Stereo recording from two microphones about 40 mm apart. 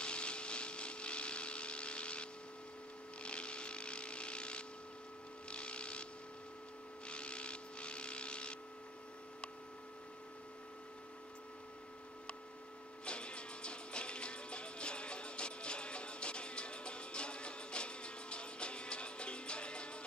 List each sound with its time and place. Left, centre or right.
0.0 s a sound: left
5.5 s vehicle: left
7.1 s vehicle: left
13.0 s music: left